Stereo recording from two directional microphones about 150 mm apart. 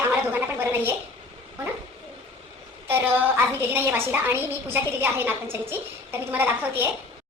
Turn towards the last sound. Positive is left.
turn(degrees=-15)  # may be behind; listen again after turning